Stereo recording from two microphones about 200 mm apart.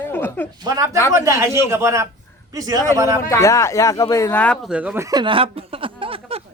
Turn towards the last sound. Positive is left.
turn(degrees=-25)  # may be behind; listen again after turning